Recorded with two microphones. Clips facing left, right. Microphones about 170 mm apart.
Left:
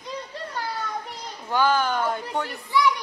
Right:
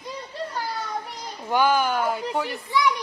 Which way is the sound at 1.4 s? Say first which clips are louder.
Right 1 dB; 15° right (ahead or behind).